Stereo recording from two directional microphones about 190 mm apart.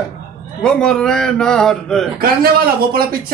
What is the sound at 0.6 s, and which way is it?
Speech, 5° left (ahead or behind).